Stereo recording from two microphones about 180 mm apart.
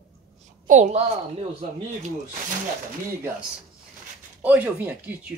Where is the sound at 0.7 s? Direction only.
45° right (ahead or behind).